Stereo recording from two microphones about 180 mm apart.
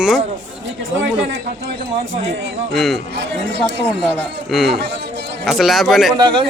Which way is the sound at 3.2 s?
75° right (ahead or behind).